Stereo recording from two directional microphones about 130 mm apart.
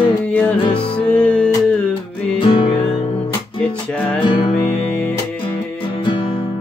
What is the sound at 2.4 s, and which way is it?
Music, 40° left (ahead or behind).